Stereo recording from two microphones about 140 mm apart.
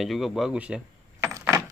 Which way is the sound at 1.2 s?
20° right (ahead or behind).